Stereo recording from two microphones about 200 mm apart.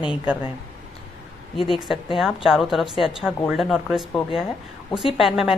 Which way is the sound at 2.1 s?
Centre (ahead or behind).